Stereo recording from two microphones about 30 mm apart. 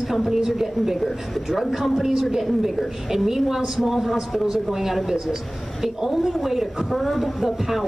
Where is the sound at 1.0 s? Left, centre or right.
Centre.